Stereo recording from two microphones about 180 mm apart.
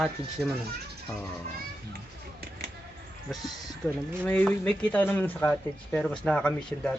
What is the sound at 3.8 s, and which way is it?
A man's voice, 5° left (ahead or behind).